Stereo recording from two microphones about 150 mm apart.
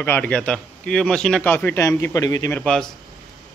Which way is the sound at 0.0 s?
10° left (ahead or behind).